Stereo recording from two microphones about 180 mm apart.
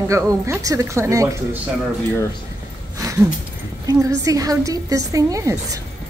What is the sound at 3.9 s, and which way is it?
A woman's voice, 20° right (ahead or behind).